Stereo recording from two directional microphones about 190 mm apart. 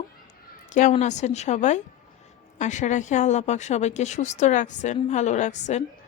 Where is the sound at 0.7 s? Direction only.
40° left (ahead or behind).